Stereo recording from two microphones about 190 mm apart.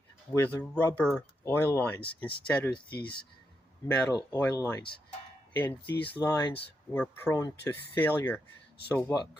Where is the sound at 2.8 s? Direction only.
55° left (ahead or behind).